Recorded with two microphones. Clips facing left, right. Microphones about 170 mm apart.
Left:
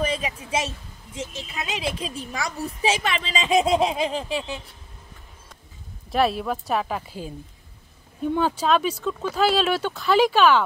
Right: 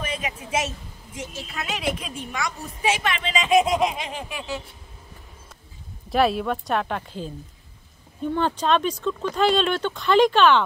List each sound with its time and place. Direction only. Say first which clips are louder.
0.0 s a sound: left 4 dB; 30° left (ahead or behind)
1.5 s speech: right 2 dB; 20° left (ahead or behind)
6.0 s speech: right 1 dB; centre (ahead or behind)
8.4 s speech: even; 5° left (ahead or behind)